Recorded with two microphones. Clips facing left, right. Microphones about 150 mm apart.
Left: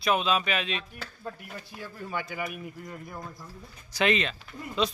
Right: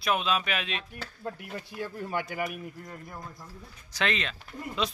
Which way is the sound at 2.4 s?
Centre (ahead or behind).